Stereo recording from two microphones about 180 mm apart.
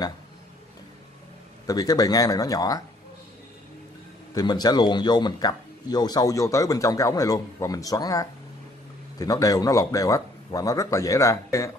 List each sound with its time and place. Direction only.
1.7 s speech: 20° left (ahead or behind)
4.3 s speech: 20° left (ahead or behind)